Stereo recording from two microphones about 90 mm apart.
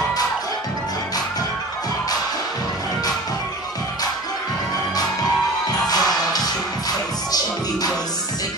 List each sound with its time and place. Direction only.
5.7 s music: 45° left (ahead or behind)